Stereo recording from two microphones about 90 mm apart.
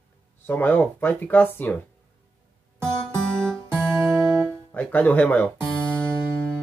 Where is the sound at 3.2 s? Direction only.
5° left (ahead or behind).